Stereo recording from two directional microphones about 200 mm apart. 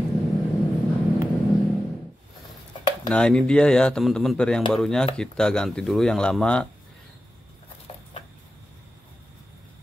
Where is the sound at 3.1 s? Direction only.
5° left (ahead or behind).